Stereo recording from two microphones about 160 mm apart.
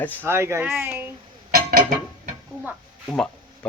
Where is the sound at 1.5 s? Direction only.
60° right (ahead or behind).